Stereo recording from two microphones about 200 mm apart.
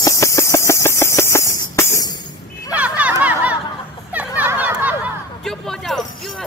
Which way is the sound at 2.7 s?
5° right (ahead or behind).